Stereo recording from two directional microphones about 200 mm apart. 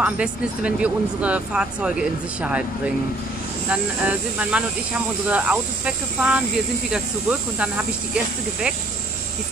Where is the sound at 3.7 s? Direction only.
5° right (ahead or behind).